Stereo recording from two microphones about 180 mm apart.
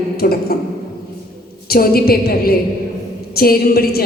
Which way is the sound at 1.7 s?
55° left (ahead or behind).